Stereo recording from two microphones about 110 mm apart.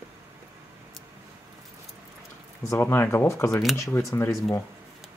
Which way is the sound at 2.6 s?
20° left (ahead or behind).